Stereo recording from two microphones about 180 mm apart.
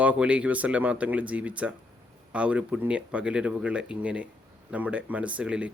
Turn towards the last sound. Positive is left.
turn(degrees=-5)  # may be behind; listen again after turning